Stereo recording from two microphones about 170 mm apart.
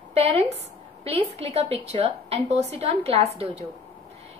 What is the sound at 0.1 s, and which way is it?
A woman's voice, 35° right (ahead or behind).